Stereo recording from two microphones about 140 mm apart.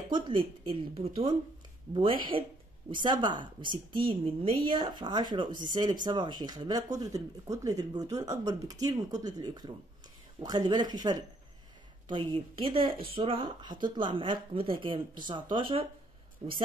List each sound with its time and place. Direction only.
0.1 s speech: 35° right (ahead or behind)